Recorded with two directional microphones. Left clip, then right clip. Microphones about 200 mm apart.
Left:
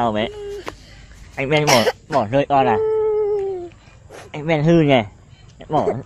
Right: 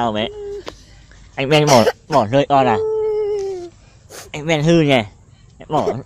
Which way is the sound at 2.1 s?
45° right (ahead or behind).